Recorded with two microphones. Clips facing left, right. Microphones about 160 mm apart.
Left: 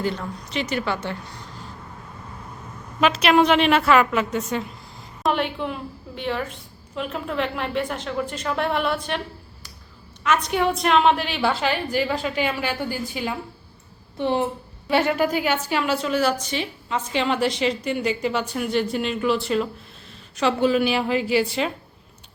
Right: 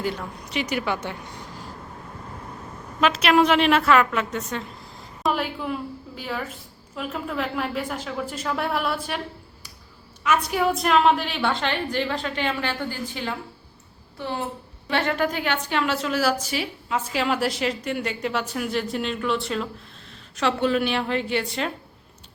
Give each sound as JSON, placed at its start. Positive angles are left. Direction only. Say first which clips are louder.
{"t": 0.0, "sound": "a woman's voice", "louder": "left 2 dB", "side_deg": -10}
{"t": 3.0, "sound": "a woman's voice", "louder": "left 1 dB", "side_deg": 0}
{"t": 10.2, "sound": "a woman's voice", "louder": "left 1 dB", "side_deg": -5}
{"t": 14.2, "sound": "speech", "louder": "left 7 dB", "side_deg": 20}
{"t": 14.8, "sound": "a woman's voice", "louder": "left 3 dB", "side_deg": 10}